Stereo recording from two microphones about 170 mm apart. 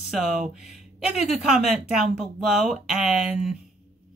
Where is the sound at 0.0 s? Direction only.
Centre (ahead or behind).